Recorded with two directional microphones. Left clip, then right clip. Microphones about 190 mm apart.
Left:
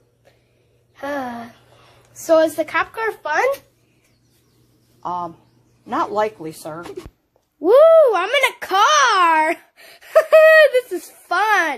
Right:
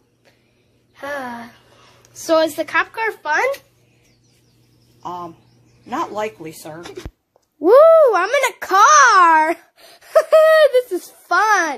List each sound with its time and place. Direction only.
0.9 s a sound: 5° left (ahead or behind)
5.0 s speech: 20° left (ahead or behind)
7.6 s a child's voice: 10° right (ahead or behind)